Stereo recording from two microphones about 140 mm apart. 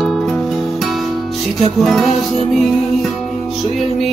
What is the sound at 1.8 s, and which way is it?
Music, centre (ahead or behind).